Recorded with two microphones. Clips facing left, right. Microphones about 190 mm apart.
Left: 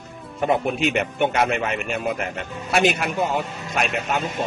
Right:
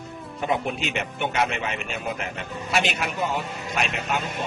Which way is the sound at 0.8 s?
50° left (ahead or behind).